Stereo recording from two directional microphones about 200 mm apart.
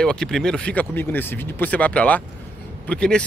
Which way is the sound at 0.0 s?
5° left (ahead or behind).